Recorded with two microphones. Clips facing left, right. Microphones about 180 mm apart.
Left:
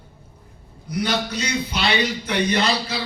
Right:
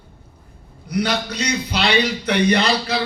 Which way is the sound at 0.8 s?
70° right (ahead or behind).